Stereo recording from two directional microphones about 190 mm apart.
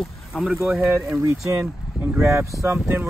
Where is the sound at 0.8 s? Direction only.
15° right (ahead or behind).